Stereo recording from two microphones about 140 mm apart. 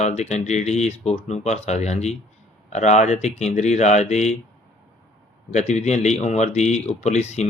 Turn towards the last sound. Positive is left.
turn(degrees=50)  # may be behind; listen again after turning